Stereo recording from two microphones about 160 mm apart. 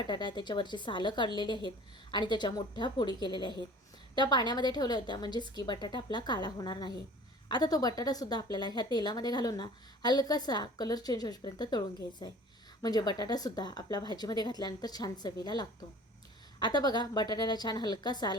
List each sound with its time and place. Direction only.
0.0 s a woman's voice: 30° left (ahead or behind)